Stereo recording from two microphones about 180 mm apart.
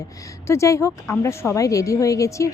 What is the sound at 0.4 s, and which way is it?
A woman's voice, 15° left (ahead or behind).